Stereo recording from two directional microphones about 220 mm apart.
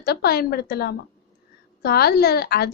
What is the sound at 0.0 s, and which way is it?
A woman's voice, 45° left (ahead or behind).